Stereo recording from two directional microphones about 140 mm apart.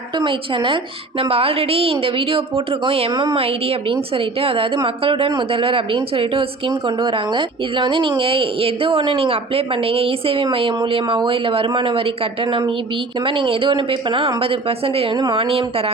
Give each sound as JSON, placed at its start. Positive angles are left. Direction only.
{"t": 0.2, "sound": "a woman's voice", "side_deg": -35}
{"t": 3.1, "sound": "speech", "side_deg": -35}
{"t": 15.4, "sound": "a woman's voice", "side_deg": -45}